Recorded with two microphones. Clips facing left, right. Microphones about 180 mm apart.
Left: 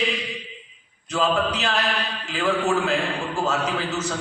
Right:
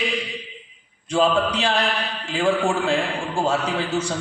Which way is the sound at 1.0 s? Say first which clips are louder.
Right 3 dB; 30° right (ahead or behind).